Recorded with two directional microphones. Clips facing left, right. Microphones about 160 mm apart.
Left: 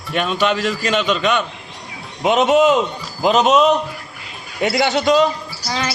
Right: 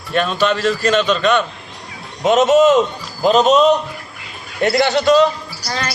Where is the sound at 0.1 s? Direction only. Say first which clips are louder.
Right 2 dB; 15° left (ahead or behind).